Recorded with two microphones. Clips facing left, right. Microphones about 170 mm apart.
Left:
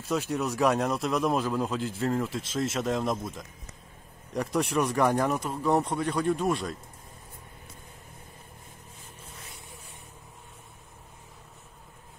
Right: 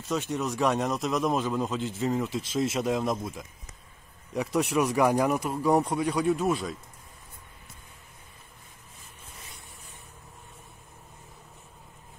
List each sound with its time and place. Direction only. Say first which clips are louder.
0.1 s a man's voice: left 1 dB; 5° left (ahead or behind)